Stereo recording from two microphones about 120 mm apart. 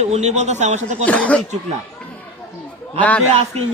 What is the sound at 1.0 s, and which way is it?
Speech, 10° left (ahead or behind).